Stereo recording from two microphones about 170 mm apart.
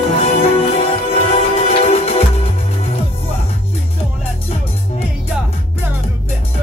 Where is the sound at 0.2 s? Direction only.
35° left (ahead or behind).